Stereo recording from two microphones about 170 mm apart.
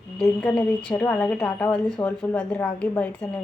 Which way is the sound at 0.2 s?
10° left (ahead or behind).